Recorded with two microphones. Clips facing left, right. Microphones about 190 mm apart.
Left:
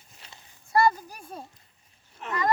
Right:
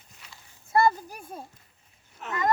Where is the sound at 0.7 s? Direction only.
20° right (ahead or behind).